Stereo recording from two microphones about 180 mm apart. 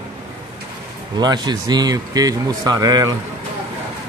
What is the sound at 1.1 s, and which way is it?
Speech, 25° right (ahead or behind).